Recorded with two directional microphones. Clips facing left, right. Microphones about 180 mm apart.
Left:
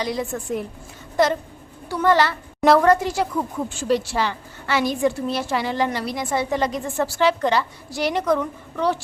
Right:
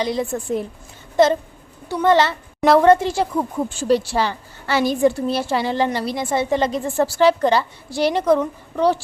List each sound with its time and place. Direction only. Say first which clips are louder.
0.0 s a woman's voice: right 3 dB; 25° right (ahead or behind)